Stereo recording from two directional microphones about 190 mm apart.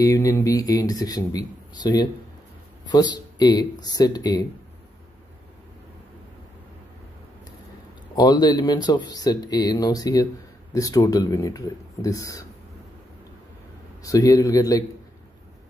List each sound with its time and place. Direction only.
0.0 s speech: 15° left (ahead or behind)
8.2 s speech: 20° left (ahead or behind)
14.0 s speech: 20° left (ahead or behind)